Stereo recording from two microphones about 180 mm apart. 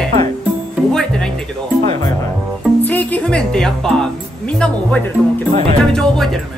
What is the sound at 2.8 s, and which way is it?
Speech, 10° left (ahead or behind).